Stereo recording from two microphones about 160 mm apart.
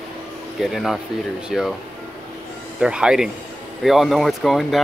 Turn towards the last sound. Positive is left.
turn(degrees=0)  # may be behind; listen again after turning